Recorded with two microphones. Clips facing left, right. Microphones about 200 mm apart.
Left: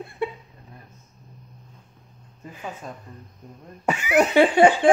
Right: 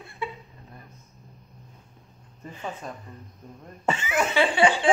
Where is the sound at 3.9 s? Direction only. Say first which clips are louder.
Left 5 dB; 15° left (ahead or behind).